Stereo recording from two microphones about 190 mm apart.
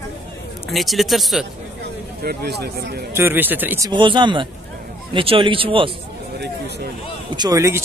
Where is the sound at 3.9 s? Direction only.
25° right (ahead or behind).